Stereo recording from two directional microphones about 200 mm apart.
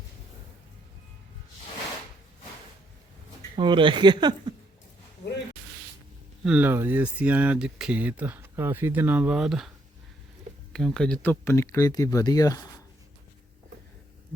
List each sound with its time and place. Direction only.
3.5 s speech: 25° right (ahead or behind)
6.4 s speech: 5° right (ahead or behind); by 12.8 s 15° left (ahead or behind)